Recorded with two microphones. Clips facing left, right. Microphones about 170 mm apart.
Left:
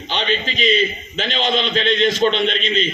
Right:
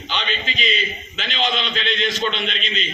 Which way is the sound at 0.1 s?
40° left (ahead or behind).